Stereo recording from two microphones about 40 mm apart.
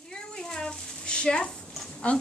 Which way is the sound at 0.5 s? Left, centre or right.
Centre.